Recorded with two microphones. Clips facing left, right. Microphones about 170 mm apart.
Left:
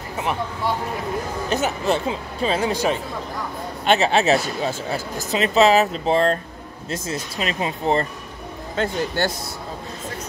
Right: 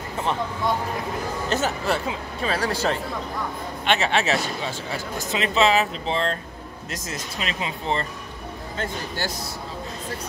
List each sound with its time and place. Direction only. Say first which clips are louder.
1.5 s speech: left 3 dB; 15° left (ahead or behind)
3.8 s speech: left 5 dB; 40° left (ahead or behind)
6.9 s speech: left 6 dB; 35° left (ahead or behind)
8.7 s speech: left 8 dB; 65° left (ahead or behind)